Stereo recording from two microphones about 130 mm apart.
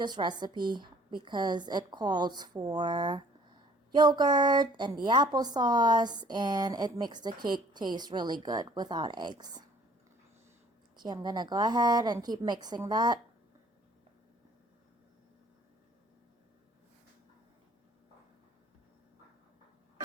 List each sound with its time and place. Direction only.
0.0 s a woman's voice: 35° right (ahead or behind)
10.9 s a woman's voice: 35° right (ahead or behind)